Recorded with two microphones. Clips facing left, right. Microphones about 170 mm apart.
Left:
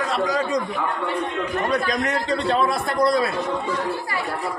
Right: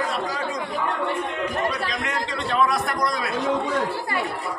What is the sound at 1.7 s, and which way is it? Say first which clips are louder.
A man's voice: left 5 dB; 45° left (ahead or behind).